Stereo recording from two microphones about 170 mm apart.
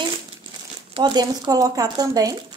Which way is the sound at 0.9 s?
25° right (ahead or behind).